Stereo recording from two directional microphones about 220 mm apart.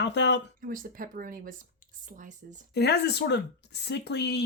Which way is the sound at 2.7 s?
50° left (ahead or behind).